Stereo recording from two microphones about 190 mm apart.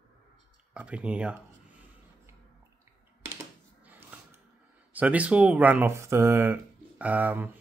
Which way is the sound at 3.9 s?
10° right (ahead or behind).